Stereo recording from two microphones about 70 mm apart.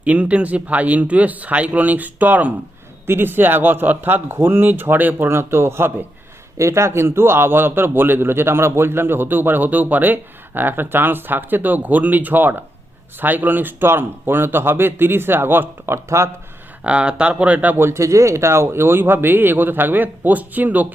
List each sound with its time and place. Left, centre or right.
0.0 s a man's voice: right
16.0 s a man's voice: right
16.8 s speech: centre
17.7 s a man's voice: right